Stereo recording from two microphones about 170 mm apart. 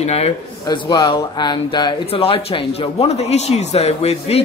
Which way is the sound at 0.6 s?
25° left (ahead or behind).